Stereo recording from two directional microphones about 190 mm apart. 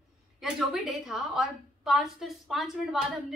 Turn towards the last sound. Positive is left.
turn(degrees=0)  # may be behind; listen again after turning